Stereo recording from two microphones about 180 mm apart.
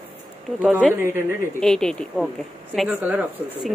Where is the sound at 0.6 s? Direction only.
Centre (ahead or behind).